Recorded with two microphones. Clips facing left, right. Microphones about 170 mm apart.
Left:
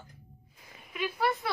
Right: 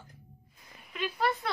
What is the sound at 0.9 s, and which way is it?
Speech, 10° left (ahead or behind).